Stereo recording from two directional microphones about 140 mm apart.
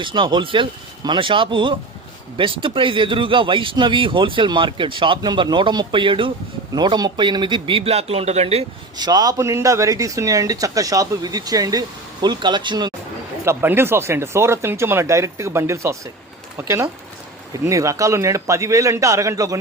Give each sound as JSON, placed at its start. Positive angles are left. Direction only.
{"t": 0.0, "sound": "speech", "side_deg": -35}
{"t": 9.0, "sound": "speech", "side_deg": -30}
{"t": 13.4, "sound": "speech", "side_deg": -15}